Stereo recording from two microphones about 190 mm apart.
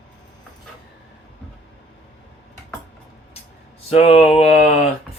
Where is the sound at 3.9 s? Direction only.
30° left (ahead or behind).